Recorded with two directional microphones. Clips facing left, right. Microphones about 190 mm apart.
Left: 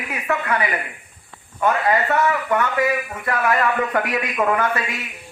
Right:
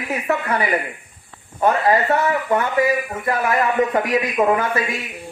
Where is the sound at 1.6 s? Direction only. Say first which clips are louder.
Right 2 dB; 30° right (ahead or behind).